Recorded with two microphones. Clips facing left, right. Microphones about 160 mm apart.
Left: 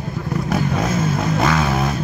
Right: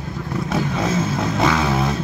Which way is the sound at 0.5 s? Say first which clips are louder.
Even; 10° left (ahead or behind).